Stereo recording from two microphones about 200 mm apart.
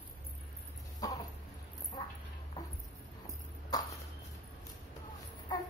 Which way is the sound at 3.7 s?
20° left (ahead or behind).